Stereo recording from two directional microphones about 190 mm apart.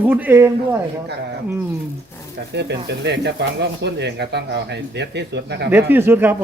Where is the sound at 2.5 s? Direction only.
60° right (ahead or behind).